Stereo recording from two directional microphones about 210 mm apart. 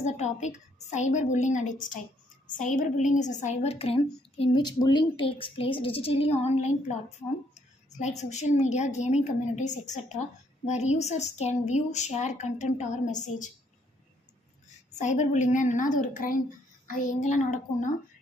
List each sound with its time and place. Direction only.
0.0 s a woman's voice: 35° left (ahead or behind)
15.0 s a woman's voice: 35° left (ahead or behind)